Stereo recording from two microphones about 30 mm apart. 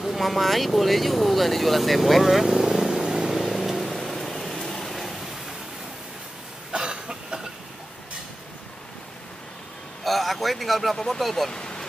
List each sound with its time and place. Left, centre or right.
0.0 s speech: centre
2.4 s vehicle: centre
3.3 s vehicle: centre
6.7 s cough: right
10.0 s a sound: centre
11.1 s speech: centre
11.5 s a sound: left